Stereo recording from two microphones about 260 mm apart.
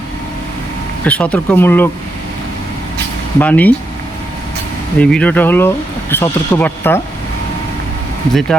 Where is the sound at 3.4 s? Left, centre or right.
Centre.